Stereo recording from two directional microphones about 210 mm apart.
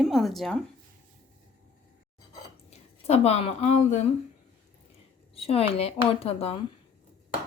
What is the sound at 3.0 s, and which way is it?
A woman's voice, 30° left (ahead or behind).